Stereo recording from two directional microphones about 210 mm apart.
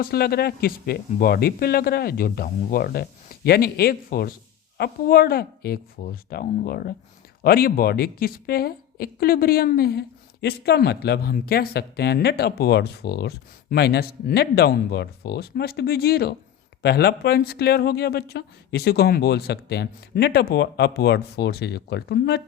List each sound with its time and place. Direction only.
0.0 s a woman's voice: 50° left (ahead or behind)